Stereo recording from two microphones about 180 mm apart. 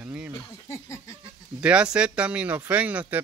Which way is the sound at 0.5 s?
15° left (ahead or behind).